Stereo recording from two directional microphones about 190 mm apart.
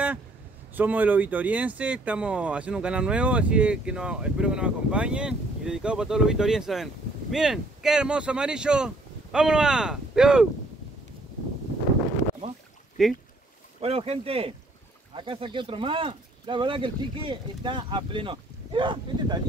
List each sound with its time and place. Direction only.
0.7 s speech: 10° right (ahead or behind)
13.0 s speech: centre (ahead or behind)
13.7 s speech: 30° right (ahead or behind)